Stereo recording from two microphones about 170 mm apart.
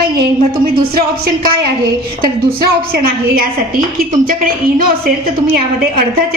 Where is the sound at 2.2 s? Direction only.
60° right (ahead or behind).